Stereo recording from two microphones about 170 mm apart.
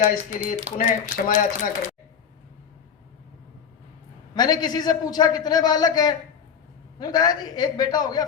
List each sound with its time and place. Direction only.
0.0 s speech: 45° left (ahead or behind)
0.7 s speech: 40° right (ahead or behind)
1.0 s speech: 55° left (ahead or behind)
4.4 s a man's voice: 25° left (ahead or behind)